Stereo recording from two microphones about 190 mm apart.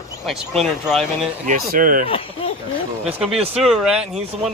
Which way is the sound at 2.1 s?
30° left (ahead or behind).